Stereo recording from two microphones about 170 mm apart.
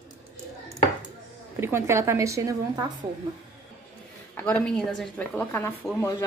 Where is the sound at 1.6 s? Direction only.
15° right (ahead or behind).